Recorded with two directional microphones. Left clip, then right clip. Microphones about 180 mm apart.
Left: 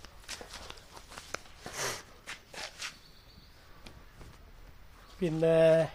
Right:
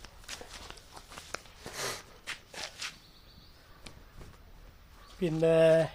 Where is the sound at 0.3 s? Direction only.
25° left (ahead or behind).